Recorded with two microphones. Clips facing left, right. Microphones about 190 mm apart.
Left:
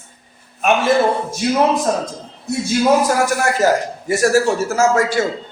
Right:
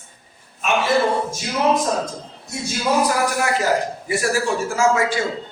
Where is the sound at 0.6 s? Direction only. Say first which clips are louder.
Left 5 dB; 55° left (ahead or behind).